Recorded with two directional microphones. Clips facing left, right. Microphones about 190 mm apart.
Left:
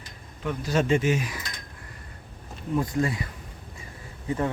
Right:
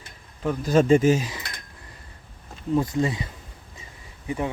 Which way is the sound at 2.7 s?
25° right (ahead or behind).